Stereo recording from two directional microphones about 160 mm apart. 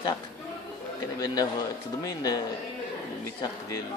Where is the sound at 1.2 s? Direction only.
25° left (ahead or behind).